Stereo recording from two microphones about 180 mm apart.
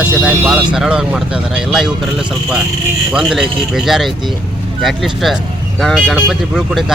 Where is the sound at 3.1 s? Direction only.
5° right (ahead or behind).